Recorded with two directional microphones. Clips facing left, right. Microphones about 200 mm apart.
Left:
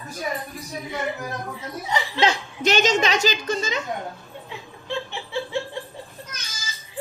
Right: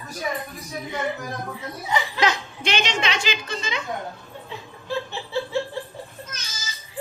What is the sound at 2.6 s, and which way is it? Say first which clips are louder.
A woman's voice: left 6 dB; 40° left (ahead or behind).